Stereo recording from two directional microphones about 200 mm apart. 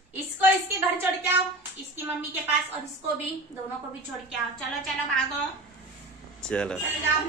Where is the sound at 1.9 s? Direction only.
10° right (ahead or behind).